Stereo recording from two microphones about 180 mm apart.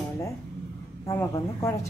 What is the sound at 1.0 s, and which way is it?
Speech, 15° left (ahead or behind).